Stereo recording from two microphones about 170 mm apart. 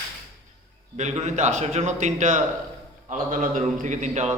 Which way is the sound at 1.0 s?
45° right (ahead or behind).